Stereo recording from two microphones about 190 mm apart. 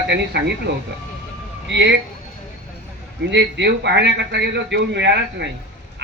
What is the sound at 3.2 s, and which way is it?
Speech, 65° right (ahead or behind).